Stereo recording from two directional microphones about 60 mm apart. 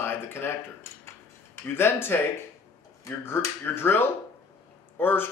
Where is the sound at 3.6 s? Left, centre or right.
Left.